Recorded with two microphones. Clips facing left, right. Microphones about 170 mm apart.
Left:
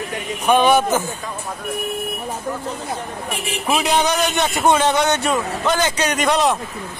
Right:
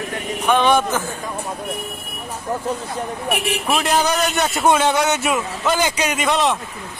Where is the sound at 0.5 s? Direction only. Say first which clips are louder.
Left 2 dB; 10° left (ahead or behind).